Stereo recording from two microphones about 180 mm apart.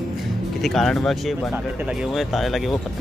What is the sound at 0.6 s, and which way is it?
Speech, centre (ahead or behind).